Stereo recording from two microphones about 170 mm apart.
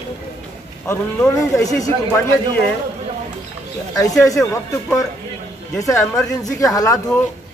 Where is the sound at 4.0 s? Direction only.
20° left (ahead or behind).